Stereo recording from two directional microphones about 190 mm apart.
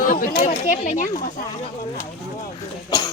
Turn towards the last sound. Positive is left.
turn(degrees=20)  # may be behind; listen again after turning